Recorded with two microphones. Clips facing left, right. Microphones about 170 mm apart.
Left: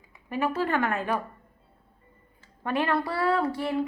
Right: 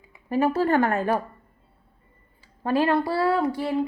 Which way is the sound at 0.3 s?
35° right (ahead or behind).